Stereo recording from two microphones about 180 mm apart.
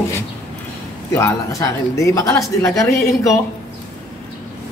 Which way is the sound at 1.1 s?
15° left (ahead or behind).